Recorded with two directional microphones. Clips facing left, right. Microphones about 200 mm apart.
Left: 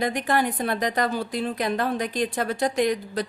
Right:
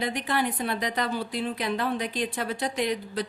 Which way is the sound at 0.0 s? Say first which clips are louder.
Left 4 dB; 45° left (ahead or behind).